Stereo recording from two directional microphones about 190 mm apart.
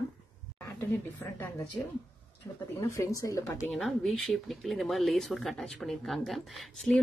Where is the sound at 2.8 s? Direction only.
15° left (ahead or behind).